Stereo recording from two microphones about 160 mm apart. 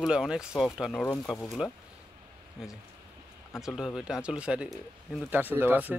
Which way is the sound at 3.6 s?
5° right (ahead or behind).